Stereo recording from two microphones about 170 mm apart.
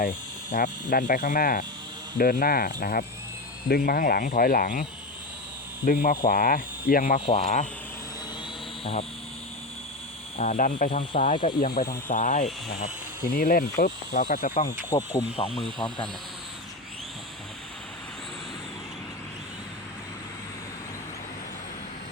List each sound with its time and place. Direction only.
0.5 s speech: 55° left (ahead or behind)
7.3 s speech: 45° left (ahead or behind)
8.8 s speech: 35° left (ahead or behind)
10.3 s speech: 40° left (ahead or behind)
11.6 s speech: 60° left (ahead or behind)
13.2 s speech: 60° left (ahead or behind)
14.8 s speech: 20° left (ahead or behind)
15.4 s speech: 35° left (ahead or behind)